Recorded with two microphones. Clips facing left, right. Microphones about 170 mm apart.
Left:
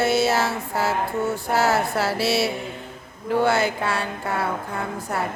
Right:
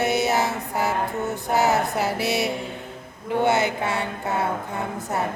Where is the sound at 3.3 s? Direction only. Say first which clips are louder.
Left 1 dB; 20° right (ahead or behind).